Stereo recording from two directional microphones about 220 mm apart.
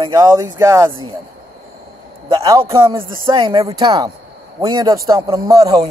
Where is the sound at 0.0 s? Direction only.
20° right (ahead or behind).